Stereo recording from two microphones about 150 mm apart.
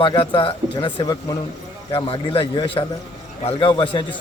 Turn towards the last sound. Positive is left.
turn(degrees=35)  # may be behind; listen again after turning